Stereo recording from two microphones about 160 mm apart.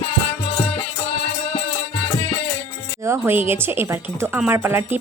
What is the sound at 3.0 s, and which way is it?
Music, 15° right (ahead or behind).